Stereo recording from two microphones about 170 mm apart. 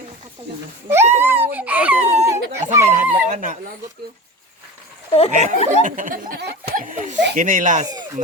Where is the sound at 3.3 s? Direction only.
50° right (ahead or behind).